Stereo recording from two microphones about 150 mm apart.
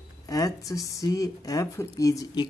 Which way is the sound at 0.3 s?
20° left (ahead or behind).